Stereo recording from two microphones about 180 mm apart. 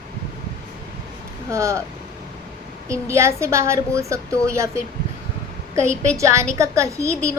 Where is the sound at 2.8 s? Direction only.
15° right (ahead or behind).